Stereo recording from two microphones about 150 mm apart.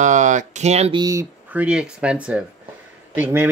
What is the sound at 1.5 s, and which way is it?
Speech, 5° right (ahead or behind).